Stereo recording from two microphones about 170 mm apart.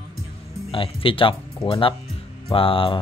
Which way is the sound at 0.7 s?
30° left (ahead or behind).